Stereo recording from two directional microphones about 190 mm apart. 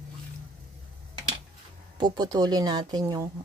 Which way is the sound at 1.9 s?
20° right (ahead or behind).